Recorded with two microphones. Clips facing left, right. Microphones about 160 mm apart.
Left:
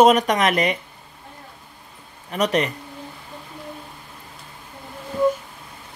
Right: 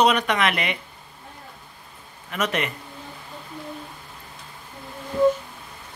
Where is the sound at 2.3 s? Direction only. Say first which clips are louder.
Left 5 dB; 35° left (ahead or behind).